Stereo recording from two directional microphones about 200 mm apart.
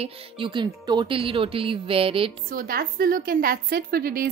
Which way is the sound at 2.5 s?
45° right (ahead or behind).